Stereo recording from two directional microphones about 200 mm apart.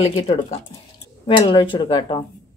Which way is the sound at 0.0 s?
30° left (ahead or behind).